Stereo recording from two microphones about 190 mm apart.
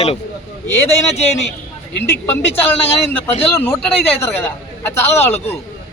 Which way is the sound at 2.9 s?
30° left (ahead or behind).